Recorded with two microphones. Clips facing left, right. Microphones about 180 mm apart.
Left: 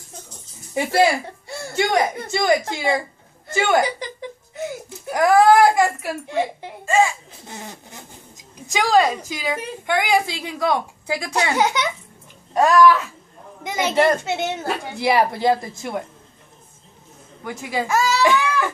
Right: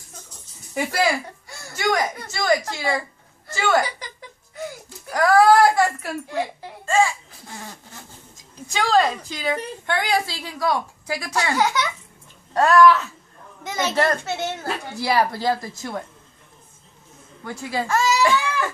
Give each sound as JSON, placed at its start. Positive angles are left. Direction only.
{"t": 1.5, "sound": "a woman's voice", "side_deg": 25}
{"t": 17.4, "sound": "a child's voice", "side_deg": 15}
{"t": 18.2, "sound": "a sound", "side_deg": 20}